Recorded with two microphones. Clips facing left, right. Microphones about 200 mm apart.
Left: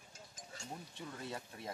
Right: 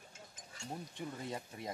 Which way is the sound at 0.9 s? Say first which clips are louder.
Right 2 dB; 15° right (ahead or behind).